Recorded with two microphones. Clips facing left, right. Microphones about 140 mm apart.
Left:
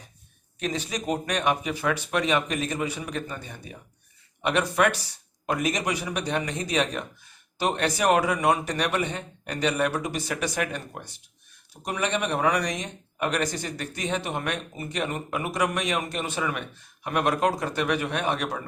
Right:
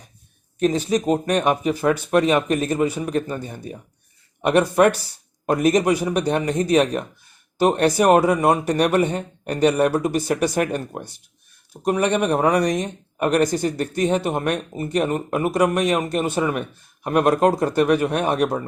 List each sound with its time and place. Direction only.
0.6 s speech: 45° right (ahead or behind)